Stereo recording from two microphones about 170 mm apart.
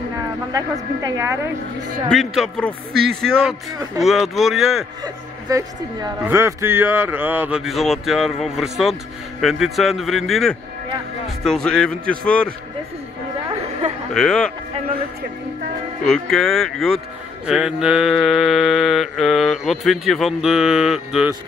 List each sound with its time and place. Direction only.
1.0 s a woman's voice: 15° right (ahead or behind)
2.0 s mantra: centre (ahead or behind)
5.0 s a woman's voice: 20° right (ahead or behind)
6.2 s mantra: 15° right (ahead or behind); by 12.5 s 5° left (ahead or behind)
14.1 s mantra: 5° left (ahead or behind)
16.1 s mantra: centre (ahead or behind)